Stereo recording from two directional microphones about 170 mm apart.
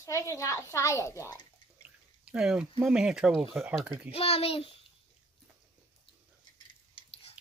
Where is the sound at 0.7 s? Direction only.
15° left (ahead or behind).